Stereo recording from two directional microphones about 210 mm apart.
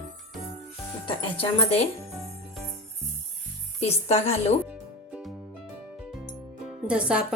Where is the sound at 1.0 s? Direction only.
25° left (ahead or behind).